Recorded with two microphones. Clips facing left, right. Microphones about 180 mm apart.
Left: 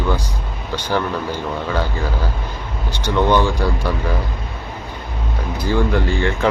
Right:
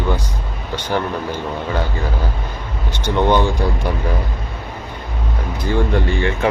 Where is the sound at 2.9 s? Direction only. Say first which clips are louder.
Even; 20° right (ahead or behind).